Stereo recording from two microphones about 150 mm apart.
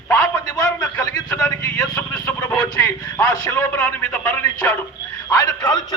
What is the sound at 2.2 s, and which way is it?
Speech, 15° left (ahead or behind).